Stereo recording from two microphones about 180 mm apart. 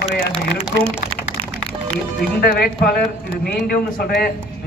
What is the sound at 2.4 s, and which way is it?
Speech, 55° left (ahead or behind).